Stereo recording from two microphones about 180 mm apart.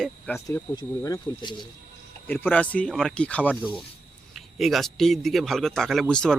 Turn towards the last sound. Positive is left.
turn(degrees=5)  # may be behind; listen again after turning